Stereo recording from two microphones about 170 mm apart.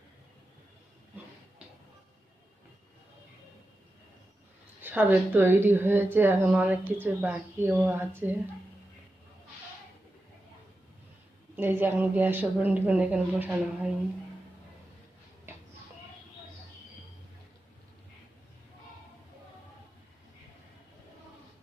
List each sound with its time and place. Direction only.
4.8 s speech: 10° right (ahead or behind)
11.5 s speech: 10° right (ahead or behind)